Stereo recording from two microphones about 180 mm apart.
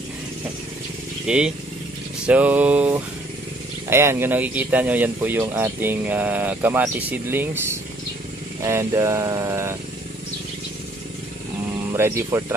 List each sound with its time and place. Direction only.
1.2 s speech: 5° right (ahead or behind)
11.9 s speech: 15° right (ahead or behind)